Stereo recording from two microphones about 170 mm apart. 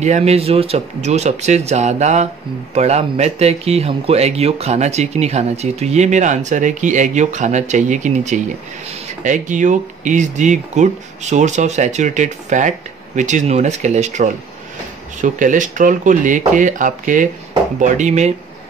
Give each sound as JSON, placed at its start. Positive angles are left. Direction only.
{"t": 0.0, "sound": "speech", "side_deg": -40}